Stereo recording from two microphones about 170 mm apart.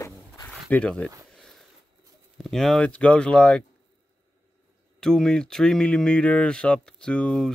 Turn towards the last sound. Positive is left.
turn(degrees=5)  # may be behind; listen again after turning